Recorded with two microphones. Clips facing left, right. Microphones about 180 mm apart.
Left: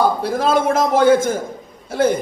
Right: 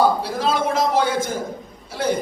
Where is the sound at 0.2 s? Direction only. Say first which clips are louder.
Left 4 dB; 50° left (ahead or behind).